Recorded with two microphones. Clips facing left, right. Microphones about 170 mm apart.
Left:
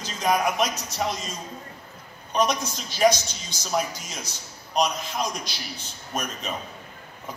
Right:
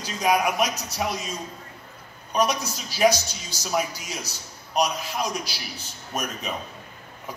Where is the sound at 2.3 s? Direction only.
10° right (ahead or behind).